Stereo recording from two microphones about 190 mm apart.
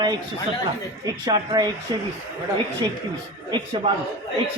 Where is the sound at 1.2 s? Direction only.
20° right (ahead or behind).